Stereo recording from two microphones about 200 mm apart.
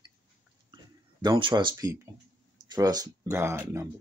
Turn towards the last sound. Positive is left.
turn(degrees=-10)  # may be behind; listen again after turning